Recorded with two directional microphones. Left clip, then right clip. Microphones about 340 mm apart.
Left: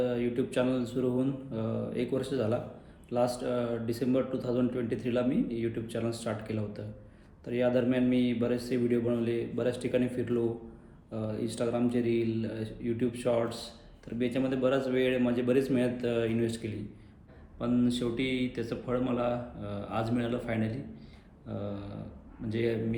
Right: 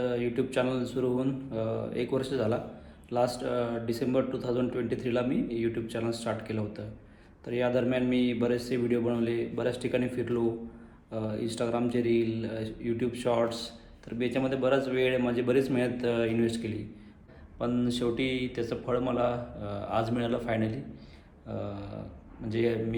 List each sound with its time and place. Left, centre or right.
0.0 s speech: centre